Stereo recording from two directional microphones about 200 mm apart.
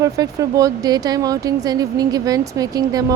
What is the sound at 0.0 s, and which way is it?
Speech, 15° right (ahead or behind).